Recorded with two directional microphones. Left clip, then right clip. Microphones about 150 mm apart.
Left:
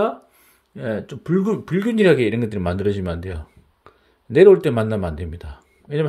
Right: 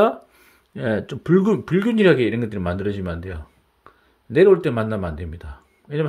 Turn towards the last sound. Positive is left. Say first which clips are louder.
# left 2 dB
turn(degrees=10)  # may be behind; listen again after turning